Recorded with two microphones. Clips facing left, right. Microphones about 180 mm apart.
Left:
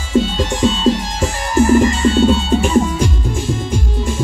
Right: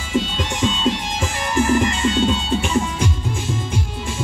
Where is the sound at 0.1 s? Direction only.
40° left (ahead or behind).